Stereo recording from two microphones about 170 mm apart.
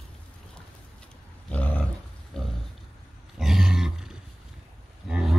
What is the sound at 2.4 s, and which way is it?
Pig, 5° left (ahead or behind).